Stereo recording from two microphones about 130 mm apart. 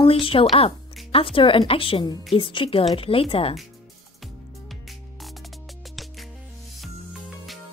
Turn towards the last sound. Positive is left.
turn(degrees=0)  # may be behind; listen again after turning